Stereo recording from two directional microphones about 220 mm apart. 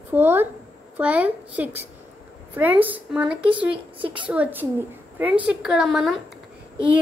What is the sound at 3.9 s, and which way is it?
Speech, 20° right (ahead or behind).